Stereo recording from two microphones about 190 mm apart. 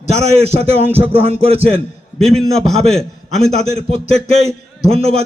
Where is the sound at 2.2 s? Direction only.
Centre (ahead or behind).